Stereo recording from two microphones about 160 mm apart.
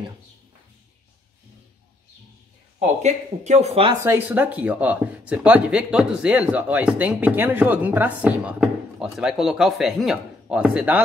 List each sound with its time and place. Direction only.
3.0 s speech: 45° right (ahead or behind)
4.0 s speech: 15° right (ahead or behind)